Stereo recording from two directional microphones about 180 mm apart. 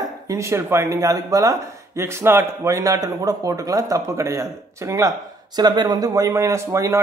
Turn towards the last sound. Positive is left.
turn(degrees=-15)  # may be behind; listen again after turning